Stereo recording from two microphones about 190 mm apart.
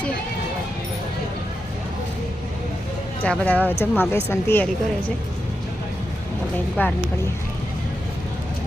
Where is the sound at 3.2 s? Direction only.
10° left (ahead or behind).